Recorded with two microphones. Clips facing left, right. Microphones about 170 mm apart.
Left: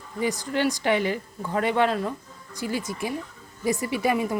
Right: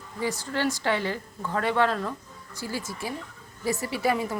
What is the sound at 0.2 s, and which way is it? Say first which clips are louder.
A woman's voice: left 3 dB; 15° left (ahead or behind).